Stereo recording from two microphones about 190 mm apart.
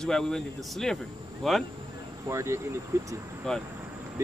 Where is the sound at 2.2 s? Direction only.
15° right (ahead or behind).